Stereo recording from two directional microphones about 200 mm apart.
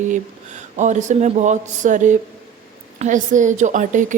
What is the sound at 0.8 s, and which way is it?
Speech, 35° right (ahead or behind).